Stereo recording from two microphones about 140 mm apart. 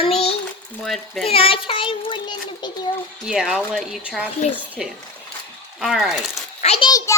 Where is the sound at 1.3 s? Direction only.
40° left (ahead or behind).